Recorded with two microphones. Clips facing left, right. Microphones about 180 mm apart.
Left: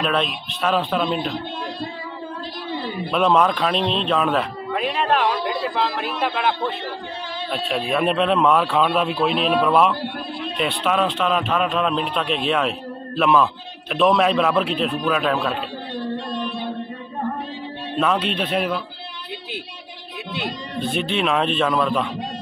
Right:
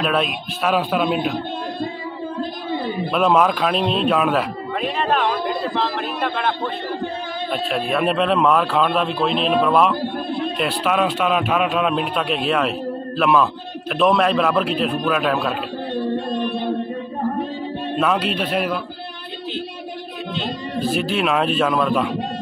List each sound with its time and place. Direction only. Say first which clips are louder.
0.0 s speech: right 2 dB; 5° right (ahead or behind)
3.1 s a man's voice: right 1 dB; 5° right (ahead or behind)
7.5 s a man's voice: right 1 dB; centre (ahead or behind)
15.9 s music: right 5 dB; 55° right (ahead or behind)
17.9 s a man's voice: even; 5° right (ahead or behind)
20.8 s a man's voice: right 1 dB; 5° right (ahead or behind)